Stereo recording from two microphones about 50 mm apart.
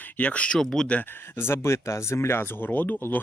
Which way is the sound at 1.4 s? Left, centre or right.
Left.